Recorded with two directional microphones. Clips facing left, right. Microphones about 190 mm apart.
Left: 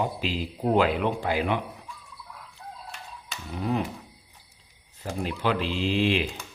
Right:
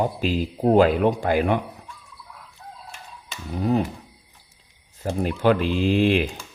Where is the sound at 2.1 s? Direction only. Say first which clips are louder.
Even; centre (ahead or behind).